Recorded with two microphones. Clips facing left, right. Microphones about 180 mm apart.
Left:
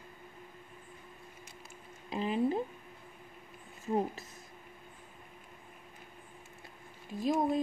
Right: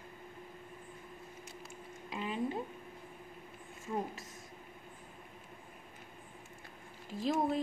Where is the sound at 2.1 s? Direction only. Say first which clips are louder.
Left 6 dB; 30° left (ahead or behind).